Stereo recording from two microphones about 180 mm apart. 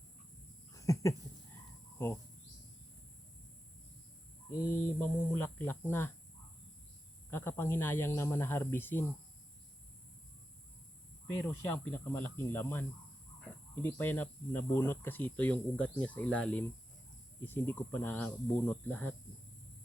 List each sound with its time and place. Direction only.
0.7 s a sound: 20° left (ahead or behind)
4.9 s speech: 10° left (ahead or behind)
7.3 s speech: 10° left (ahead or behind)
11.4 s speech: 15° left (ahead or behind)